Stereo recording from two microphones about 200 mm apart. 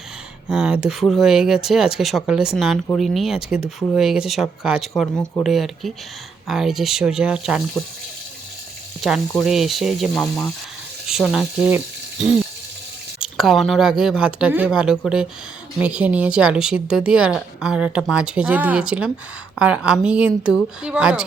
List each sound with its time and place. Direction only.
0.4 s speech: 5° right (ahead or behind)
9.0 s speech: centre (ahead or behind)
13.2 s speech: centre (ahead or behind)